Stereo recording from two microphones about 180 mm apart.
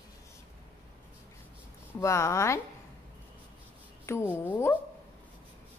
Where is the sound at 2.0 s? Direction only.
15° left (ahead or behind).